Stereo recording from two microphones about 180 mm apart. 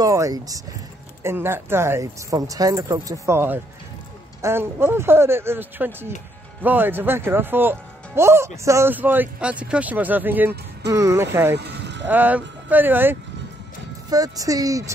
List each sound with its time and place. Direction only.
0.0 s speech: 20° right (ahead or behind)
11.5 s music: 70° right (ahead or behind)
12.1 s speech: 10° right (ahead or behind)